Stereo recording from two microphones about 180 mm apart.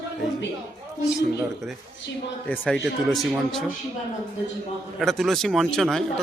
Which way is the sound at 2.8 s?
Centre (ahead or behind).